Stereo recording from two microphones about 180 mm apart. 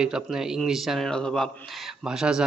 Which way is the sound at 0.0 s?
5° right (ahead or behind).